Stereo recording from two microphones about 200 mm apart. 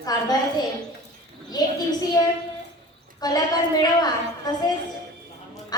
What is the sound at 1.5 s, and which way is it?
Speech, 20° left (ahead or behind).